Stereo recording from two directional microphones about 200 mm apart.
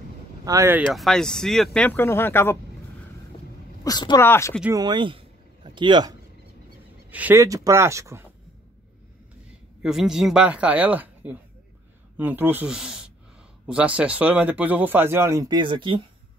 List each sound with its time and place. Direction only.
0.5 s speech: 10° right (ahead or behind)
0.8 s speech: centre (ahead or behind)
3.8 s a woman's voice: 20° left (ahead or behind)
4.7 s speech: 20° right (ahead or behind)
7.1 s speech: 10° right (ahead or behind)
9.8 s speech: 5° right (ahead or behind); by 16.0 s 25° right (ahead or behind)